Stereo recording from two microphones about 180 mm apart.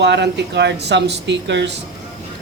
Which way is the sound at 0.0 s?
75° right (ahead or behind).